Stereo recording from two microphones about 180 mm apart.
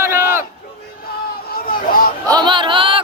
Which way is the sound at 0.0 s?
15° right (ahead or behind).